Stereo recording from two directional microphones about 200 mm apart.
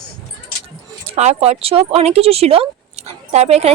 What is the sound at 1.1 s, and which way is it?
A woman's voice, 30° right (ahead or behind).